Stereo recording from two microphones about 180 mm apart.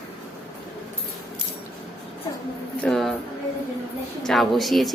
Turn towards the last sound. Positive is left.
turn(degrees=0)  # may be behind; listen again after turning